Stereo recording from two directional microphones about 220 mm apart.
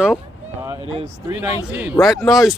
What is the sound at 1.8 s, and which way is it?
Speech, 5° right (ahead or behind).